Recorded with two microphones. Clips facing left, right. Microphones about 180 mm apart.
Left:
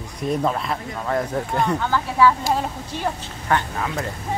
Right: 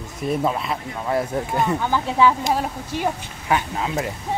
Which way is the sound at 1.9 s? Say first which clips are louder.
Even; 20° right (ahead or behind).